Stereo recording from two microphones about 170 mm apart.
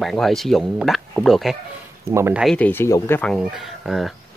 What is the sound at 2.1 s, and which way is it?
Speech, 15° right (ahead or behind).